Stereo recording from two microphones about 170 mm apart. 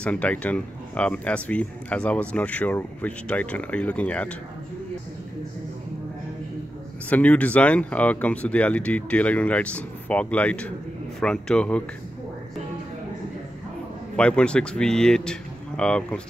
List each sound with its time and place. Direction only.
0.0 s speech: 10° left (ahead or behind)
7.1 s speech: 10° left (ahead or behind)
14.1 s speech: 5° left (ahead or behind)